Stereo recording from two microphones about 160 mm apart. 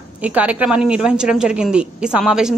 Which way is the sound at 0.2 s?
10° right (ahead or behind).